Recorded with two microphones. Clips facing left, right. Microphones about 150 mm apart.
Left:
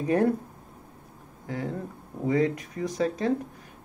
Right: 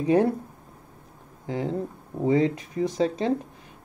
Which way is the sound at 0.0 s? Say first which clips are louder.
Right 3 dB; 20° right (ahead or behind).